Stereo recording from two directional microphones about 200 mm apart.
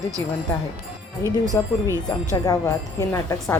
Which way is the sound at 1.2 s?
15° right (ahead or behind).